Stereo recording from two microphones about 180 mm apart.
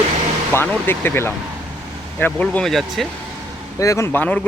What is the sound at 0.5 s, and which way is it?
Speech, 10° left (ahead or behind).